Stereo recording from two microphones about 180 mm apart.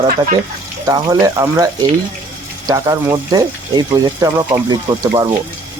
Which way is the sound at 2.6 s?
20° right (ahead or behind).